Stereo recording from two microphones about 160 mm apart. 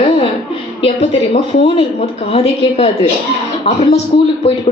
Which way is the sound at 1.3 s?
35° left (ahead or behind).